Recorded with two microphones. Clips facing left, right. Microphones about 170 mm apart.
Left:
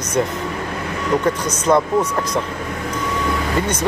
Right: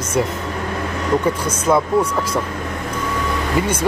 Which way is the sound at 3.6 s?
10° right (ahead or behind).